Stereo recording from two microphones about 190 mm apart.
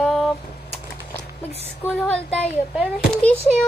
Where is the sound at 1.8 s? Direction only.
Centre (ahead or behind).